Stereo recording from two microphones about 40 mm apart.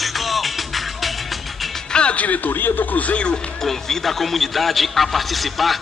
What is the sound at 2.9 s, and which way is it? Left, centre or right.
Speech, left.